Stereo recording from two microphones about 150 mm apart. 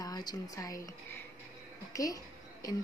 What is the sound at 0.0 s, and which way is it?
Speech, 25° left (ahead or behind).